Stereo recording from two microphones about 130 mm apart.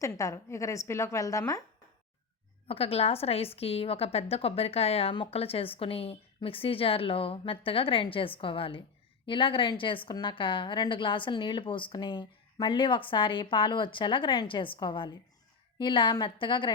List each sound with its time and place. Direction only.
0.0 s a woman's voice: 25° left (ahead or behind)
2.6 s a woman's voice: 50° left (ahead or behind)